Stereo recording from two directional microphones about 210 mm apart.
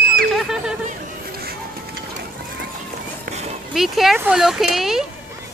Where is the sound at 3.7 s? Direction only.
Centre (ahead or behind).